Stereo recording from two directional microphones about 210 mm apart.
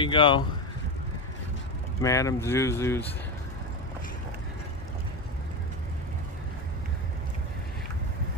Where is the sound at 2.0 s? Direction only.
15° left (ahead or behind).